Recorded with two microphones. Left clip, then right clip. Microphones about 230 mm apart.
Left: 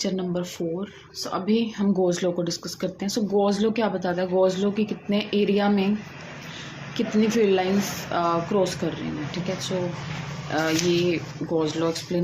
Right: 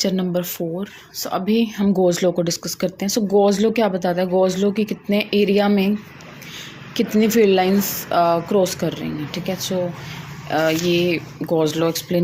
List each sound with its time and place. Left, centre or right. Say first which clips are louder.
0.0 s speech: right 6 dB; right
6.9 s speech: right 6 dB; right